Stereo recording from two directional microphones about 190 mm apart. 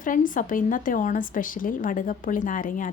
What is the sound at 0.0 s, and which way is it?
Speech, 45° left (ahead or behind).